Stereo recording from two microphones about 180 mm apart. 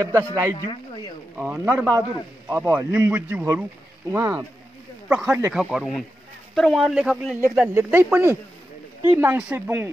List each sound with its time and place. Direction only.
0.0 s a man's voice: 15° right (ahead or behind)